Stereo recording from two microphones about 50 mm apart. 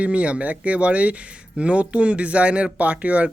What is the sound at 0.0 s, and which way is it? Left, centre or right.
Speech, right.